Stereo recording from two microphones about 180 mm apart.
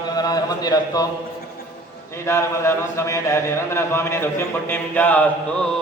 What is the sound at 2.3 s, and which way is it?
Speech, 15° left (ahead or behind).